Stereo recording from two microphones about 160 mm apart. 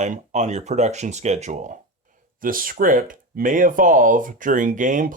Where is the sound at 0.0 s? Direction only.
45° right (ahead or behind).